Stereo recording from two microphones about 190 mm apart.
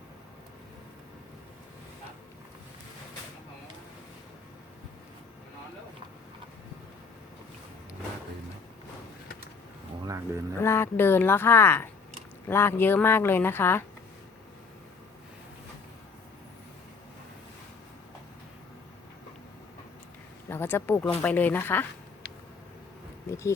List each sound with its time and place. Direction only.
10.1 s a sound: 15° right (ahead or behind)
10.6 s speech: 15° left (ahead or behind)
20.5 s speech: 10° left (ahead or behind)